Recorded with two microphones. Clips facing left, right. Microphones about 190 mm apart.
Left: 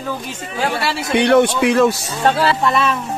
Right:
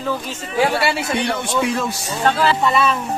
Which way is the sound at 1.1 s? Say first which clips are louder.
Left 8 dB; 70° left (ahead or behind).